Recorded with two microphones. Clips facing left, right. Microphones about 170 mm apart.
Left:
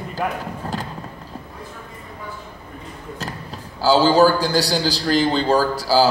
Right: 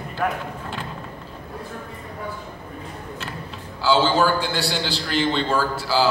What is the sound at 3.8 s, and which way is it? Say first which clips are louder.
A man's voice: left 5 dB; 40° left (ahead or behind).